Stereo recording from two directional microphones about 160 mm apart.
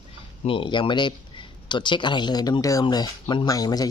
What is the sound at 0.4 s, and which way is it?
A man's voice, 35° left (ahead or behind).